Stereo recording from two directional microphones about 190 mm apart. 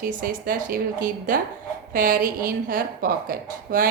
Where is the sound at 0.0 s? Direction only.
50° right (ahead or behind).